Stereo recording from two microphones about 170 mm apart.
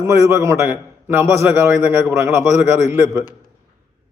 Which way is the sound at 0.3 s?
15° right (ahead or behind).